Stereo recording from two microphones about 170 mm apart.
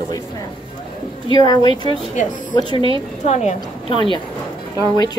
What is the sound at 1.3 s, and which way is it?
Speech, 25° left (ahead or behind).